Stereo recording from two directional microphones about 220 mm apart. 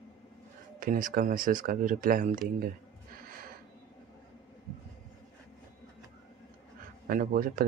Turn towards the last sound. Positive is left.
turn(degrees=-40)  # may be behind; listen again after turning